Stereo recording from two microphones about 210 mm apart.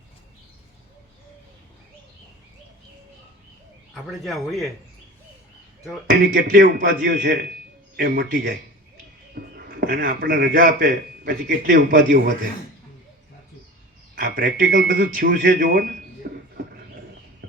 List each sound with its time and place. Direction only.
3.9 s speech: centre (ahead or behind)
6.1 s a man's voice: 40° right (ahead or behind)
14.2 s a man's voice: 45° right (ahead or behind)
16.2 s beatboxing: 45° right (ahead or behind)